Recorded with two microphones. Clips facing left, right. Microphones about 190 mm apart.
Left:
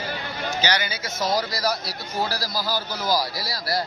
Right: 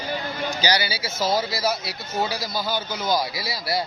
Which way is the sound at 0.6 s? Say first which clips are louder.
Right 1 dB; 10° right (ahead or behind).